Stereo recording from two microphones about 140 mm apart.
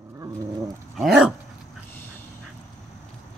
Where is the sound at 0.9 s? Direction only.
Centre (ahead or behind).